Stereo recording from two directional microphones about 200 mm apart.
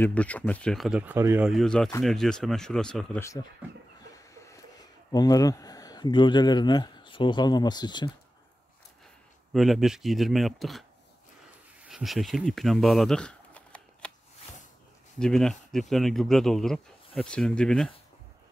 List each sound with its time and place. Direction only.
0.0 s speech: 5° left (ahead or behind); by 1.5 s 10° right (ahead or behind)
1.5 s speech: centre (ahead or behind)
3.6 s chicken: 5° right (ahead or behind)
4.2 s a sound: 15° left (ahead or behind)
9.5 s speech: centre (ahead or behind)
11.8 s a sound: centre (ahead or behind)
15.1 s speech: 5° left (ahead or behind)